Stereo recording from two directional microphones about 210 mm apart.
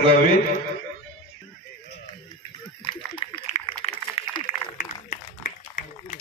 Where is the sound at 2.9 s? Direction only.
25° left (ahead or behind).